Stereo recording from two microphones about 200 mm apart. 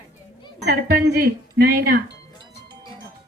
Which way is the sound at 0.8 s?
50° right (ahead or behind).